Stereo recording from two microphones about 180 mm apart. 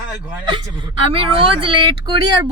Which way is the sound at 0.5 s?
30° right (ahead or behind).